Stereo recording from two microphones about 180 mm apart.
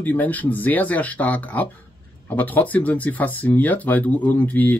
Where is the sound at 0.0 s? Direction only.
10° left (ahead or behind).